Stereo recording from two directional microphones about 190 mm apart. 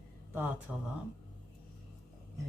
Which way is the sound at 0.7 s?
5° right (ahead or behind).